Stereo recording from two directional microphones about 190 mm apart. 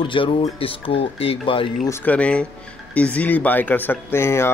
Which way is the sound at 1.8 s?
10° left (ahead or behind).